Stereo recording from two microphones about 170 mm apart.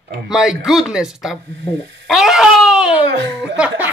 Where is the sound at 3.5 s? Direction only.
10° right (ahead or behind).